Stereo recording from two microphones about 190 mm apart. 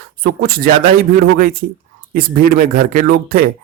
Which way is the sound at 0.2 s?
50° right (ahead or behind).